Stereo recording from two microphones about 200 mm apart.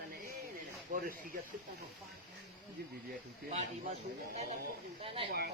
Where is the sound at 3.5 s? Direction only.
35° right (ahead or behind).